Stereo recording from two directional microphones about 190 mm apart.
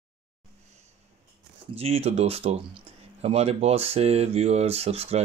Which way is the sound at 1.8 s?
30° right (ahead or behind).